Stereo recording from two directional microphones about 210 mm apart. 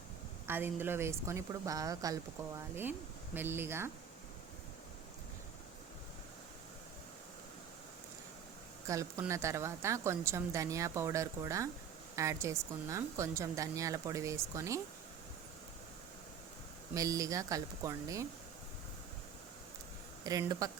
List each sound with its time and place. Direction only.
0.4 s a woman's voice: 10° right (ahead or behind)
3.3 s a woman's voice: 10° right (ahead or behind)
8.9 s a woman's voice: 15° right (ahead or behind)
16.9 s a woman's voice: 15° right (ahead or behind)
20.2 s a woman's voice: 15° right (ahead or behind)